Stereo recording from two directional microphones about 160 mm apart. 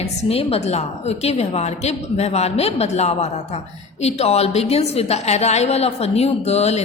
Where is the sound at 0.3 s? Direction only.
40° left (ahead or behind).